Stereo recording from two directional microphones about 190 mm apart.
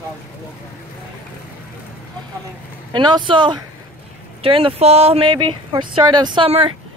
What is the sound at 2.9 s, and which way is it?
Speech, 25° right (ahead or behind).